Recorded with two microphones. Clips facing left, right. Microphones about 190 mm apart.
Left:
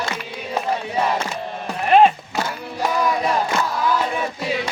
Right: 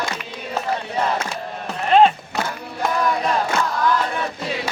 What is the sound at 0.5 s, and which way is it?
Battle cry, 10° left (ahead or behind).